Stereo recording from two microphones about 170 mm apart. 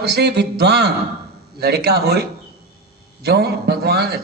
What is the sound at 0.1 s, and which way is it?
A man's voice, 75° right (ahead or behind).